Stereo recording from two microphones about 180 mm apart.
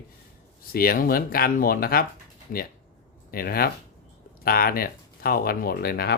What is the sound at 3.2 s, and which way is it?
Speech, 55° left (ahead or behind).